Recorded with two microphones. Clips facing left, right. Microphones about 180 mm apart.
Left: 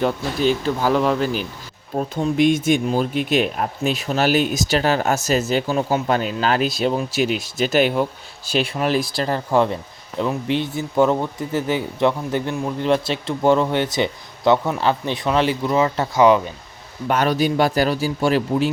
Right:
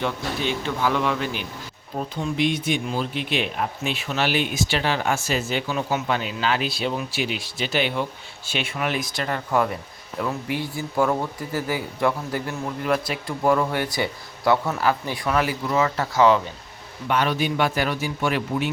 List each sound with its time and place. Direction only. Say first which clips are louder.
0.0 s a man's voice: left 6 dB; 40° left (ahead or behind); by 16.4 s 15° left (ahead or behind)
17.1 s a man's voice: left 4 dB; 40° left (ahead or behind)